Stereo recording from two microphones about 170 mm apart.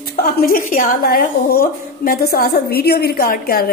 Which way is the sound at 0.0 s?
65° left (ahead or behind).